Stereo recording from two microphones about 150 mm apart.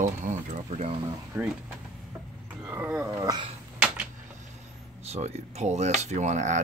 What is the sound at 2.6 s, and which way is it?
Speech, 10° right (ahead or behind).